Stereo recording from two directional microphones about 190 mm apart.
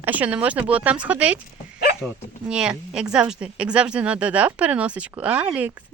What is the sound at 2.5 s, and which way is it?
Speech, 5° right (ahead or behind).